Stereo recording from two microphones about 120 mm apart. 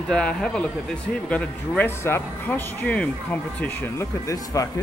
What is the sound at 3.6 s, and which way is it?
Speech, 25° left (ahead or behind).